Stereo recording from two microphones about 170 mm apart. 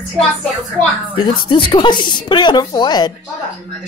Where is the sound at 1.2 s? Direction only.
30° left (ahead or behind).